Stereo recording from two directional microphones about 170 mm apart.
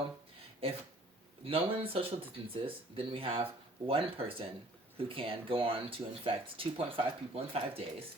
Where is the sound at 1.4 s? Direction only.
35° right (ahead or behind).